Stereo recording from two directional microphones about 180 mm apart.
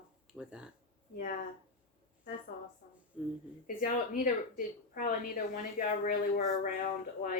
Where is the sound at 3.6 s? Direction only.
50° left (ahead or behind).